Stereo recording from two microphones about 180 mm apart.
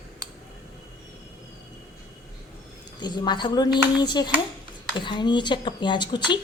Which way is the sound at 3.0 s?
25° left (ahead or behind).